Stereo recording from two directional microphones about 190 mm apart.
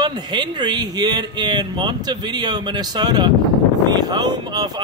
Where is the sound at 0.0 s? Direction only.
25° right (ahead or behind).